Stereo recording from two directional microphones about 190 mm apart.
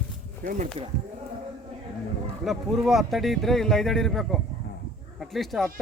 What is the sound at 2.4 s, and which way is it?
Speech, centre (ahead or behind).